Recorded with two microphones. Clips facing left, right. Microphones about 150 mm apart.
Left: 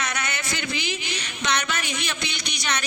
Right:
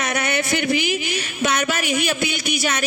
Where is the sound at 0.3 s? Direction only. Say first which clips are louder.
Right 10 dB; 15° right (ahead or behind).